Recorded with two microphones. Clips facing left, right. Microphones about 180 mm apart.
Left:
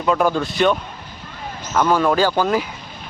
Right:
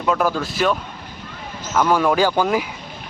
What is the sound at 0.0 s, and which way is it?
Speech, centre (ahead or behind).